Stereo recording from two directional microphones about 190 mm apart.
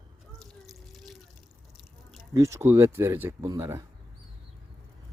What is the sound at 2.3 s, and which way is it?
Speech, 15° right (ahead or behind).